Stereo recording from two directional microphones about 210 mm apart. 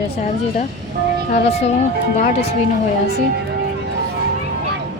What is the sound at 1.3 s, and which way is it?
Speech, 30° left (ahead or behind).